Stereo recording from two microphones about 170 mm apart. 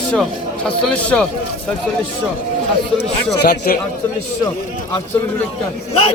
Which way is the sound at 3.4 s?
65° left (ahead or behind).